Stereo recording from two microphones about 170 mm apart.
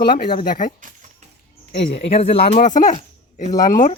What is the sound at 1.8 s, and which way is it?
Speech, 35° left (ahead or behind).